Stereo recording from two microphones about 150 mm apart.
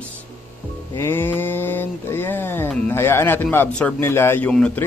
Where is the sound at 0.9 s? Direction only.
15° left (ahead or behind).